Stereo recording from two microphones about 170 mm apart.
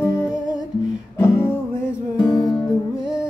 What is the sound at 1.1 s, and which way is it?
Music, 15° left (ahead or behind).